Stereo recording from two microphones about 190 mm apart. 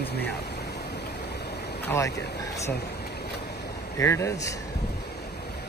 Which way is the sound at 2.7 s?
60° left (ahead or behind).